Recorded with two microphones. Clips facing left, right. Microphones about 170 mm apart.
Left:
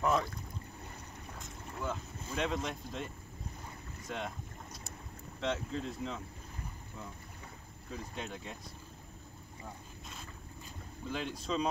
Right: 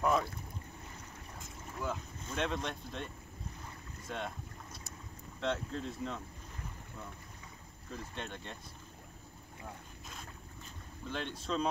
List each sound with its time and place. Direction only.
0.0 s boat: centre (ahead or behind)
1.8 s speech: centre (ahead or behind)
5.4 s speech: centre (ahead or behind)
7.9 s speech: 5° left (ahead or behind)
9.6 s boat: centre (ahead or behind)
11.1 s speech: 5° left (ahead or behind)